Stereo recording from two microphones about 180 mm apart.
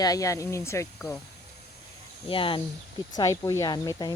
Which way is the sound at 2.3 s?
30° left (ahead or behind).